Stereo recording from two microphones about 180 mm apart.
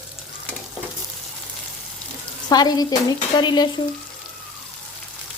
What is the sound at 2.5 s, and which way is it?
Speech, 20° left (ahead or behind).